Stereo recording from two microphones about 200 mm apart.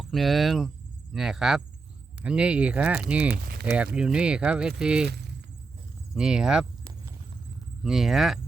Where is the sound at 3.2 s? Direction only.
50° right (ahead or behind).